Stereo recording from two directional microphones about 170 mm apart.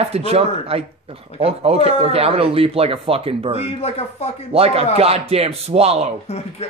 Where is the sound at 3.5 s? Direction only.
35° left (ahead or behind).